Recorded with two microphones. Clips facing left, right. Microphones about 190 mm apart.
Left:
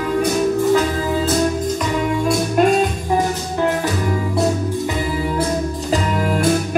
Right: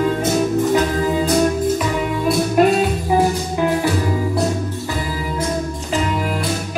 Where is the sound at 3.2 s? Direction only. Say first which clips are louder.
Right 2 dB; 10° right (ahead or behind).